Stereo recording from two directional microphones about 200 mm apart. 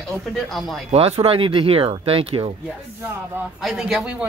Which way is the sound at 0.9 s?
30° right (ahead or behind).